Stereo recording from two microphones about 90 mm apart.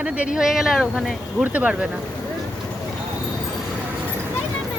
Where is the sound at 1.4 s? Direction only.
15° right (ahead or behind).